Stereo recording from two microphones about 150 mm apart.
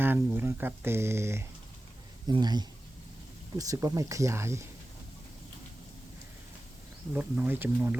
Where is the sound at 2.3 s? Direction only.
30° right (ahead or behind).